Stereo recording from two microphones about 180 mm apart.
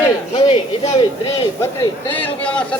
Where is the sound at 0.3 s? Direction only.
30° left (ahead or behind).